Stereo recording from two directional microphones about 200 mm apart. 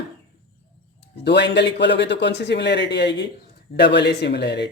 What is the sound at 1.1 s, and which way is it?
Speech, 60° left (ahead or behind).